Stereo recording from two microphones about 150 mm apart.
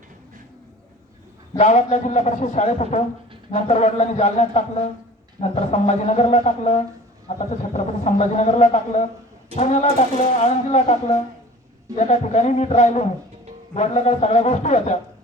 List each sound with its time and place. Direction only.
1.5 s a man's voice: 50° left (ahead or behind)
11.9 s a man's voice: 45° left (ahead or behind)